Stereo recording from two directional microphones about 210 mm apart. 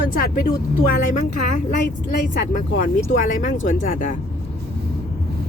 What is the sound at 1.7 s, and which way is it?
Speech, 50° left (ahead or behind).